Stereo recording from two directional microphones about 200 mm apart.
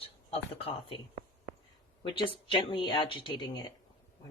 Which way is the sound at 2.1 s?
25° left (ahead or behind).